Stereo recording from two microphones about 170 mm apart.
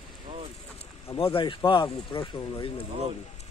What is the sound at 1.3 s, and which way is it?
Speech, 30° left (ahead or behind).